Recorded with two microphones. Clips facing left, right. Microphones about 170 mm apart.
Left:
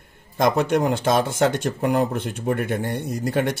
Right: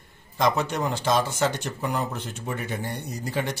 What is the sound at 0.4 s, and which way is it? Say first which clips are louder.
Speech: left 5 dB; 50° left (ahead or behind).